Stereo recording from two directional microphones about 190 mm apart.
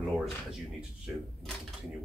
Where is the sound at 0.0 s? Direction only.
Centre (ahead or behind).